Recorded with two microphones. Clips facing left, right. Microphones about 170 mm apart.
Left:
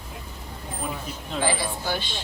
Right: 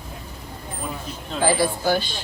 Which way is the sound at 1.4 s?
40° right (ahead or behind).